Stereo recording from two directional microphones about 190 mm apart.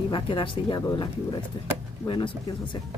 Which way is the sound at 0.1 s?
25° left (ahead or behind).